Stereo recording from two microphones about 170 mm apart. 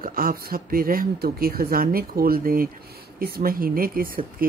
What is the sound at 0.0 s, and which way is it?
Speech, 55° right (ahead or behind).